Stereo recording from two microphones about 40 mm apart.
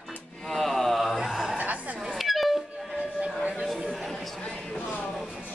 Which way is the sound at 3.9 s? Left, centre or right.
Centre.